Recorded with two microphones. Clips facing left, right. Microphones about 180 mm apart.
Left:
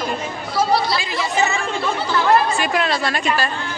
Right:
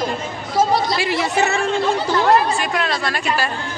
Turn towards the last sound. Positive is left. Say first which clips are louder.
# left 2 dB
turn(degrees=0)  # may be behind; listen again after turning